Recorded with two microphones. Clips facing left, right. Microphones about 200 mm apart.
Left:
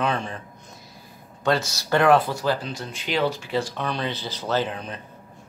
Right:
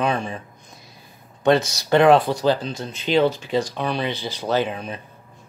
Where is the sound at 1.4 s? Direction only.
20° right (ahead or behind).